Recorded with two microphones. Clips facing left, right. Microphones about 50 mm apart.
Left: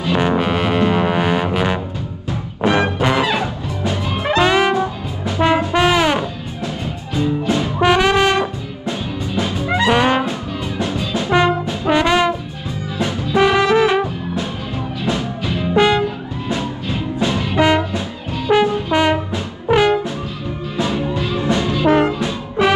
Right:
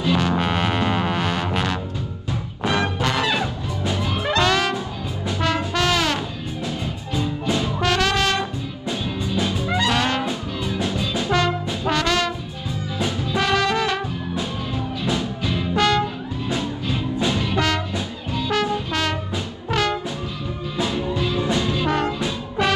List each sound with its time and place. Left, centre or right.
0.0 s music: left
0.4 s music: centre
2.6 s music: left
4.1 s brass instrument: left
7.5 s brass instrument: centre
10.9 s music: left
11.8 s brass instrument: centre
15.4 s music: left
17.4 s music: centre
18.5 s brass instrument: left
20.8 s music: left